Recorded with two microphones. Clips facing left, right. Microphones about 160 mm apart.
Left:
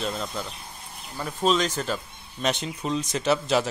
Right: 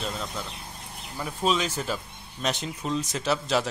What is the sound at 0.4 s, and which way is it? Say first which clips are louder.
Speech: left 2 dB; centre (ahead or behind).